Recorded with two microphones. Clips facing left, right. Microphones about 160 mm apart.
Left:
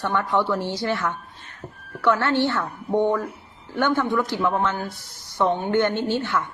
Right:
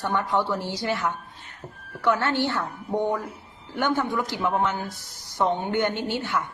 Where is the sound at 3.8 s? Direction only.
15° right (ahead or behind).